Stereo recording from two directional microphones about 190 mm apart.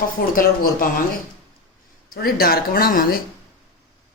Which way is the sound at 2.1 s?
50° left (ahead or behind).